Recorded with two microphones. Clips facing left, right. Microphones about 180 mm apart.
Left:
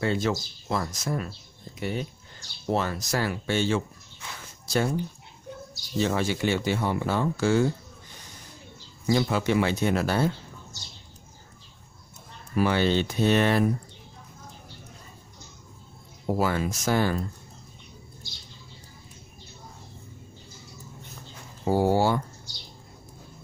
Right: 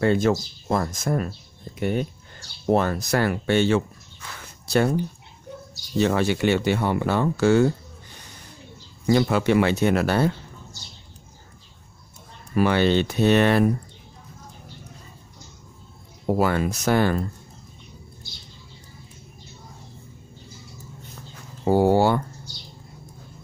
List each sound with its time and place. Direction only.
0.0 s speech: 55° right (ahead or behind)
5.9 s speech: 65° right (ahead or behind)
9.0 s speech: 65° right (ahead or behind)
12.5 s speech: 65° right (ahead or behind)
16.3 s speech: 60° right (ahead or behind)
21.6 s speech: 60° right (ahead or behind)